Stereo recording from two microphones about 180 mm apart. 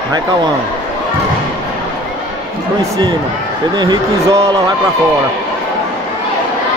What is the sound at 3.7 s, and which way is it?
Speech, 20° right (ahead or behind).